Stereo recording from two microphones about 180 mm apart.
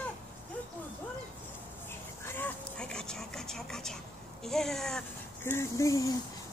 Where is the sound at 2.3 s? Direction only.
10° left (ahead or behind).